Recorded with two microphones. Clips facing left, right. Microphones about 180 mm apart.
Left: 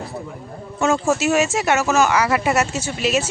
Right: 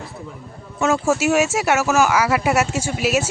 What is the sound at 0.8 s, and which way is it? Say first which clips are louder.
Speech: even; 5° right (ahead or behind).